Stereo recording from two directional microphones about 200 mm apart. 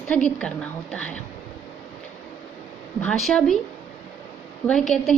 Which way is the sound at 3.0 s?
Centre (ahead or behind).